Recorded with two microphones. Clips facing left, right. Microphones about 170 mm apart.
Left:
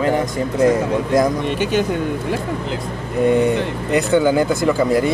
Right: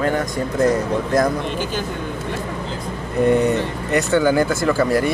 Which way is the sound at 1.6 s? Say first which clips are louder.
Left 6 dB; 70° left (ahead or behind).